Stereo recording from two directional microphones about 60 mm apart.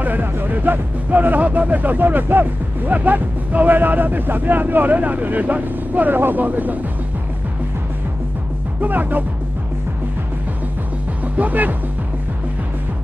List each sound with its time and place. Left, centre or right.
0.0 s speech: right
8.8 s music: right
11.3 s speech: right